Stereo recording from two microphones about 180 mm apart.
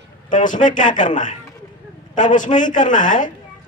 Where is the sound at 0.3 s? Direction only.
45° left (ahead or behind).